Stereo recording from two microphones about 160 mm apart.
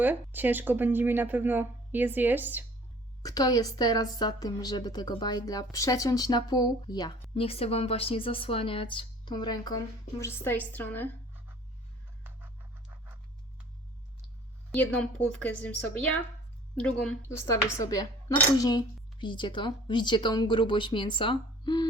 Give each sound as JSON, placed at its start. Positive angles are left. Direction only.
{"t": 0.0, "sound": "speech", "side_deg": -10}
{"t": 3.2, "sound": "a woman's voice", "side_deg": 25}
{"t": 14.7, "sound": "a woman's voice", "side_deg": 5}
{"t": 17.2, "sound": "a woman's voice", "side_deg": 20}